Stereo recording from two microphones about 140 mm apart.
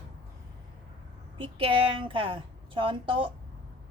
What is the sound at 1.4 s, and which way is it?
A woman's voice, 40° right (ahead or behind).